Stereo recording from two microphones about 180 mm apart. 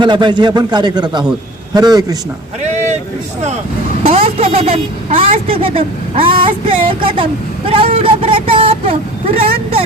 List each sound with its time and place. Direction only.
0.0 s a man's voice: 25° right (ahead or behind)
2.6 s a sound: 40° right (ahead or behind)
4.0 s a woman's voice: 35° right (ahead or behind)